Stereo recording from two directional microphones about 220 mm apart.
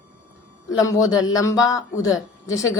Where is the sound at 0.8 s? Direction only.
15° left (ahead or behind).